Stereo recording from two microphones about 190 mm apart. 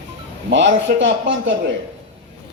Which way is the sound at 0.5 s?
75° right (ahead or behind).